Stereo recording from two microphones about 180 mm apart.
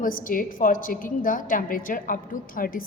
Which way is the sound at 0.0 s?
50° left (ahead or behind).